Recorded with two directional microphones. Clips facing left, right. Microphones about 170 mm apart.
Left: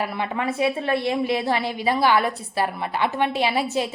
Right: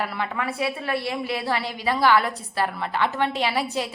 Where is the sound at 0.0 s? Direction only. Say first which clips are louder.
Left 2 dB; 15° left (ahead or behind).